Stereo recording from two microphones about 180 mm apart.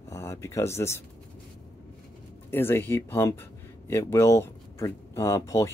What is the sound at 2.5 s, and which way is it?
Speech, 10° left (ahead or behind).